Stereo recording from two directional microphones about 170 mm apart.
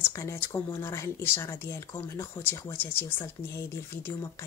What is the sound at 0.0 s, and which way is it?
Speech, 15° left (ahead or behind).